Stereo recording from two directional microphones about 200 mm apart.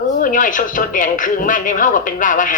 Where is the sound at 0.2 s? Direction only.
40° left (ahead or behind).